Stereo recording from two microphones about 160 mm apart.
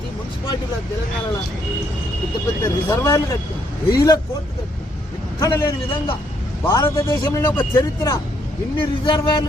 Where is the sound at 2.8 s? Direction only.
20° left (ahead or behind).